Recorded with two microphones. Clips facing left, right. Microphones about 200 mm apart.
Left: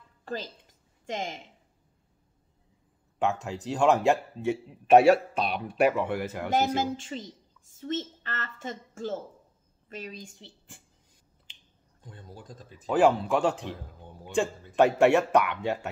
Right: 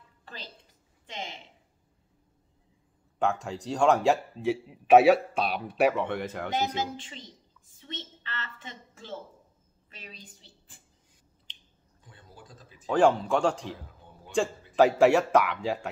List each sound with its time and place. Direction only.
0.2 s a sound: 45° left (ahead or behind)
1.0 s a woman's voice: 45° left (ahead or behind)
3.2 s speech: centre (ahead or behind)
6.5 s a woman's voice: 50° left (ahead or behind)
12.0 s a woman's voice: 45° left (ahead or behind)
12.8 s speech: 5° left (ahead or behind)